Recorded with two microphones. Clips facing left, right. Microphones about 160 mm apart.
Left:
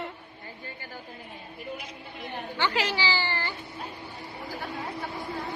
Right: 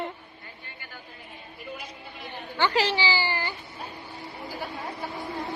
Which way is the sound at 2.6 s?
45° right (ahead or behind).